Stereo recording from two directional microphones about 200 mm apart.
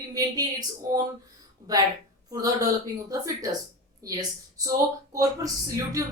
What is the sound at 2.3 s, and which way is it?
Speech, 15° right (ahead or behind).